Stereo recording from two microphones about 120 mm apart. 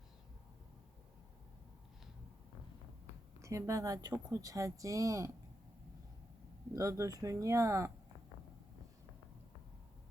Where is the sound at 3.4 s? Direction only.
25° right (ahead or behind).